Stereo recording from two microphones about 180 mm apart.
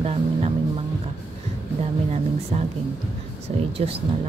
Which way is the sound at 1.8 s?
40° right (ahead or behind).